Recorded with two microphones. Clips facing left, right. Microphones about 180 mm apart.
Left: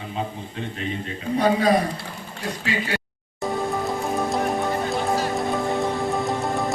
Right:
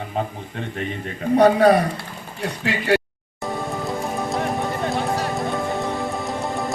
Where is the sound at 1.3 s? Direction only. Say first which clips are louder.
Right 5 dB; 65° right (ahead or behind).